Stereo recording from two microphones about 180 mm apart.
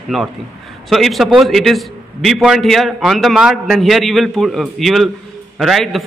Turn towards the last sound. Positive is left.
turn(degrees=0)  # may be behind; listen again after turning